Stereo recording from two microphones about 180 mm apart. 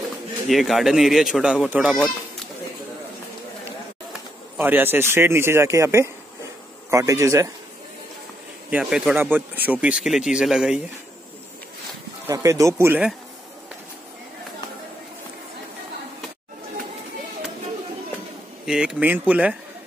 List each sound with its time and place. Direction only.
0.5 s speech: centre (ahead or behind)
4.6 s a man's voice: 10° right (ahead or behind)
8.6 s speech: 5° right (ahead or behind)
12.3 s a man's voice: 15° right (ahead or behind)
18.7 s a man's voice: 5° right (ahead or behind)